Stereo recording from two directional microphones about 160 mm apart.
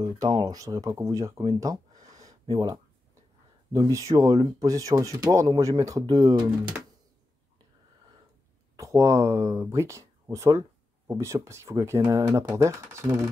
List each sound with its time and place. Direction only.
0.0 s speech: 25° right (ahead or behind)
2.2 s a sound: 20° right (ahead or behind)
3.7 s speech: 20° right (ahead or behind)
8.7 s speech: 20° right (ahead or behind)